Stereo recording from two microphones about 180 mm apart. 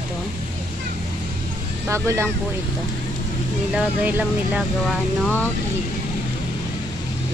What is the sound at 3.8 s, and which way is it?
Speech, 10° right (ahead or behind).